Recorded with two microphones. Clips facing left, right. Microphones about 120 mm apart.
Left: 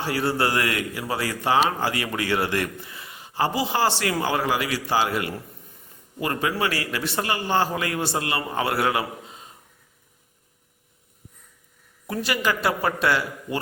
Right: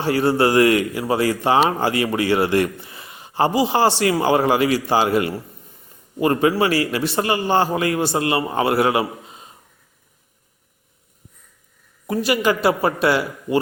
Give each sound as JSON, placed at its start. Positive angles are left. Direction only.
{"t": 0.0, "sound": "a man's voice", "side_deg": -25}
{"t": 7.2, "sound": "speech", "side_deg": -25}
{"t": 12.0, "sound": "a man's voice", "side_deg": -15}